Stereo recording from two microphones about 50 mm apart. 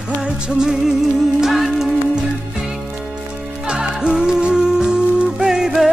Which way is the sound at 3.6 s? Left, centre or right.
Centre.